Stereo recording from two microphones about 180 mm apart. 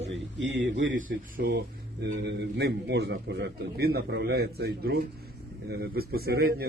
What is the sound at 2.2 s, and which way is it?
A man's voice, 65° right (ahead or behind).